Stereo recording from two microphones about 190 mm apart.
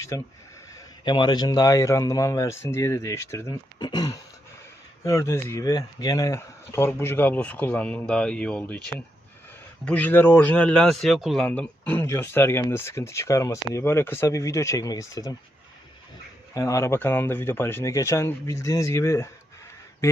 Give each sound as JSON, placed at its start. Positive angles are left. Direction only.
{"t": 0.7, "sound": "speech", "side_deg": 25}
{"t": 9.8, "sound": "speech", "side_deg": 10}
{"t": 16.6, "sound": "speech", "side_deg": 15}